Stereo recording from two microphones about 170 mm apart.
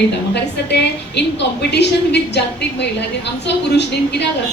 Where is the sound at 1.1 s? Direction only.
85° left.